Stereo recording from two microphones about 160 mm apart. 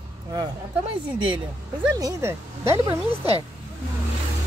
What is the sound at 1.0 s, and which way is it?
Speech, 30° right (ahead or behind).